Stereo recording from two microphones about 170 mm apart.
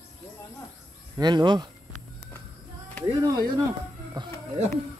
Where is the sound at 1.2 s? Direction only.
25° right (ahead or behind).